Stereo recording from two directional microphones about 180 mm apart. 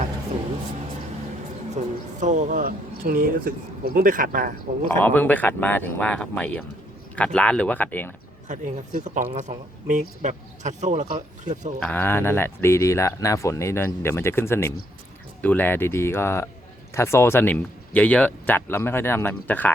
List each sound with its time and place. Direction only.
1.7 s speech: 45° right (ahead or behind)
4.9 s speech: 10° left (ahead or behind)
8.4 s speech: 45° right (ahead or behind)
11.8 s speech: 10° left (ahead or behind)